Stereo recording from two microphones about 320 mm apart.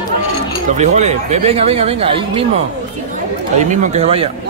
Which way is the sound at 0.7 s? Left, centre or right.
Right.